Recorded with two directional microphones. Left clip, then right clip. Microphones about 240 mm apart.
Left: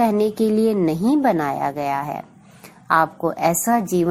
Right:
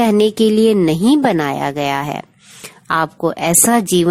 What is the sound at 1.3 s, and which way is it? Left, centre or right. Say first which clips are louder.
A woman's voice: right 3 dB; right.